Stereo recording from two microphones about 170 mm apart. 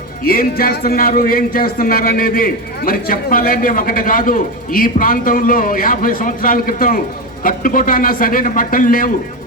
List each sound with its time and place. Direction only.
0.3 s speech: 60° left (ahead or behind)